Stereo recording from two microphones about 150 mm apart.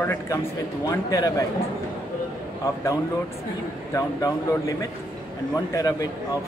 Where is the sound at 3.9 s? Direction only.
20° left (ahead or behind).